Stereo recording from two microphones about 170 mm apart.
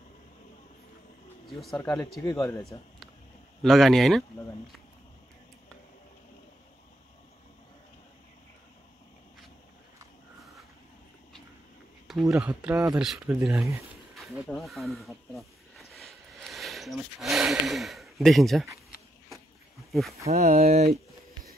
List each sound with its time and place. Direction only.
1.8 s speech: 10° left (ahead or behind)
2.0 s speech: centre (ahead or behind)
3.6 s speech: centre (ahead or behind)
12.1 s speech: centre (ahead or behind)
12.7 s speech: 20° right (ahead or behind)
14.1 s speech: centre (ahead or behind)
19.9 s speech: centre (ahead or behind)
20.2 s speech: 40° right (ahead or behind)